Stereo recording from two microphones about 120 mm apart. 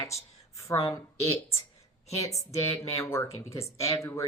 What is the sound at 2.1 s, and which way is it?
Speech, 25° left (ahead or behind).